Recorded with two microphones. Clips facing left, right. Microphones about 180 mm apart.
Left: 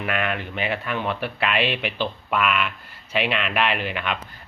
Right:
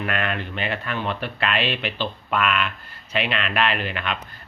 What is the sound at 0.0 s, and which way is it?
Speech, 10° left (ahead or behind).